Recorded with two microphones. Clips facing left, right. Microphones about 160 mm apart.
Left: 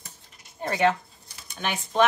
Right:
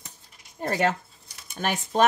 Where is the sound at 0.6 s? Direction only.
45° right (ahead or behind).